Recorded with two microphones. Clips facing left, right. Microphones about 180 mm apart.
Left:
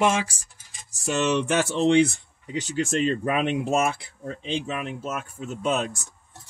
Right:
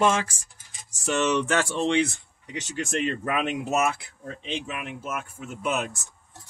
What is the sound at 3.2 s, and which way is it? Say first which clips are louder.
Speech: left 3 dB; 30° left (ahead or behind).